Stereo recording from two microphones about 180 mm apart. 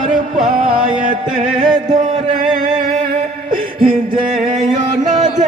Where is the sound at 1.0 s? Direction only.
45° right (ahead or behind).